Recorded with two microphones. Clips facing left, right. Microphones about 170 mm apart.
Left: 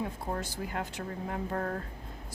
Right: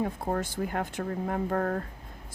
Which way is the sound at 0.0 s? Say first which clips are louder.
Right 5 dB; 50° right (ahead or behind).